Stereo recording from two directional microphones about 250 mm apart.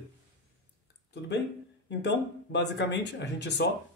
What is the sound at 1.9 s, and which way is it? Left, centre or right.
Speech, left.